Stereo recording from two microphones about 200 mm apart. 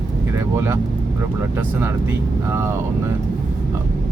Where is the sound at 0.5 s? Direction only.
15° right (ahead or behind).